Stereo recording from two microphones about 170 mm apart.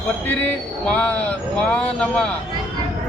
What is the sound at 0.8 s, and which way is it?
A man's voice, 5° left (ahead or behind).